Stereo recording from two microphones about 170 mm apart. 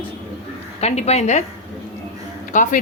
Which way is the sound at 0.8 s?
40° left (ahead or behind).